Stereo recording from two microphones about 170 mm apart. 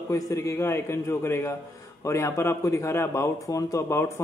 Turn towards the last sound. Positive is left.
turn(degrees=15)  # may be behind; listen again after turning